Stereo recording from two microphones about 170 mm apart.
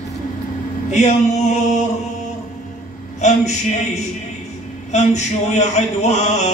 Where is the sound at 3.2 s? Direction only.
45° left (ahead or behind).